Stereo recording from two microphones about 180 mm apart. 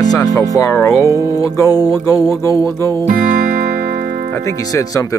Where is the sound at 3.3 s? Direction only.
55° right (ahead or behind).